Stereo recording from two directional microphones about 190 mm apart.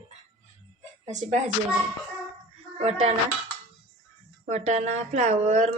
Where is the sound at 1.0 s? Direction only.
40° right (ahead or behind).